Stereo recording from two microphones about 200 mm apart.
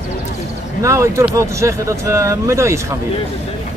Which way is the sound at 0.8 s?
15° right (ahead or behind).